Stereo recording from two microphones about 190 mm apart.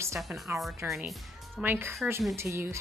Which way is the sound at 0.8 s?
Centre (ahead or behind).